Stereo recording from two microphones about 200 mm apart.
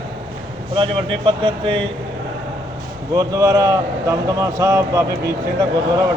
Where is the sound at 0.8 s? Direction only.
25° right (ahead or behind).